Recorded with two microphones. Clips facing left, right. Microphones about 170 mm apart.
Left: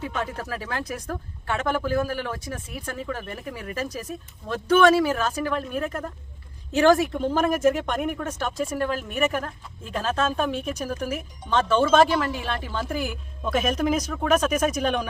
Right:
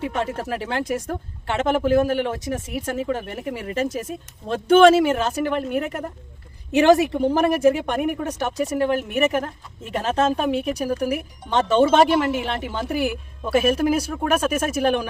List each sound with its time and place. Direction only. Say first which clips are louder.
0.3 s a woman's voice: right 5 dB; 25° right (ahead or behind)
10.5 s a woman's voice: right 6 dB; 70° right (ahead or behind)
10.8 s a woman's voice: right 6 dB; 10° right (ahead or behind)
13.1 s speech: right 4 dB; 10° right (ahead or behind)